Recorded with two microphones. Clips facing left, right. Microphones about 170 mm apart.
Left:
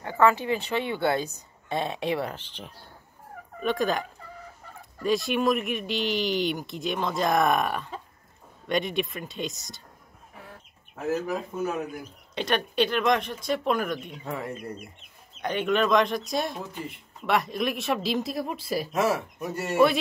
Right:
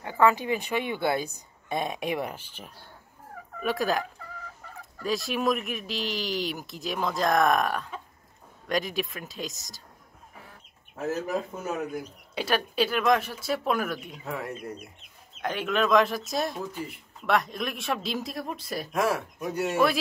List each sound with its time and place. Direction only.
0.0 s a woman's voice: 15° right (ahead or behind)
5.0 s a man's voice: centre (ahead or behind)
12.4 s a man's voice: 5° right (ahead or behind)